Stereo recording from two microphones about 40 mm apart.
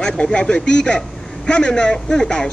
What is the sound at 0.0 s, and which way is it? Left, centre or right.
Speech, left.